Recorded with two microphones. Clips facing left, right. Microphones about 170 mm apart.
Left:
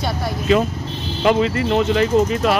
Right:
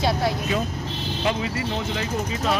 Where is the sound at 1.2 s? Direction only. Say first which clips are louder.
Left 9 dB; 65° left (ahead or behind).